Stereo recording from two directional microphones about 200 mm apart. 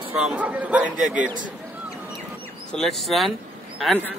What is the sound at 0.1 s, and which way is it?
Speech, 5° right (ahead or behind).